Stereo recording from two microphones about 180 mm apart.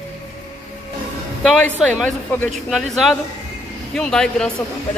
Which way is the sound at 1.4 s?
5° left (ahead or behind).